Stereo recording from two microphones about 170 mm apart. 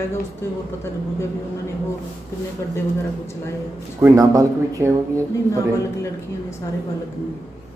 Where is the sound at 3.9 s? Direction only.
20° right (ahead or behind).